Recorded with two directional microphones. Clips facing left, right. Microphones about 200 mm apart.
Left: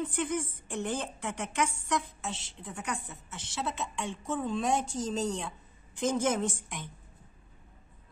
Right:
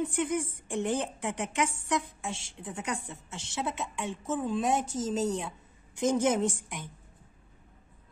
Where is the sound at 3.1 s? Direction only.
25° right (ahead or behind).